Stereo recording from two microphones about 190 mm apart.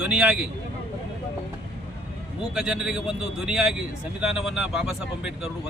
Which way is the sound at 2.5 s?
5° right (ahead or behind).